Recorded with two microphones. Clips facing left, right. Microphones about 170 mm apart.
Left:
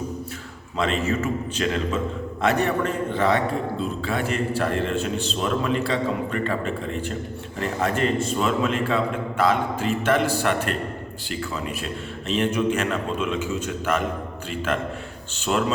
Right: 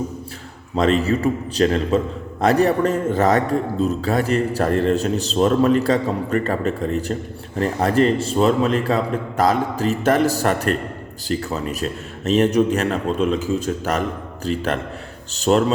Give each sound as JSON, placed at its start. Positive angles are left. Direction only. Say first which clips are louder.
{"t": 0.8, "sound": "a man's voice", "louder": "right 6 dB", "side_deg": -35}